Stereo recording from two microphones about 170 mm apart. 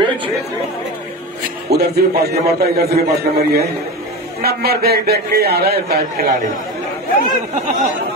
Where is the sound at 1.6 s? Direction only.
70° right (ahead or behind).